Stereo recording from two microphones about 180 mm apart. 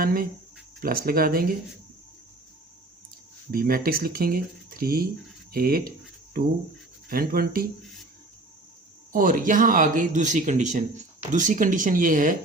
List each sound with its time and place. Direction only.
0.0 s speech: 55° right (ahead or behind)
3.5 s speech: 55° right (ahead or behind)
7.1 s speech: 55° right (ahead or behind)
9.1 s speech: 50° right (ahead or behind)